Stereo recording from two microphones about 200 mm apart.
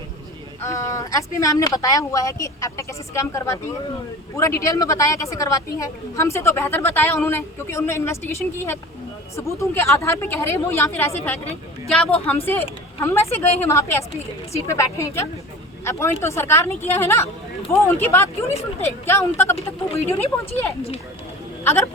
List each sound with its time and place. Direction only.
0.6 s a woman's voice: 15° left (ahead or behind)
21.6 s speech: 15° left (ahead or behind)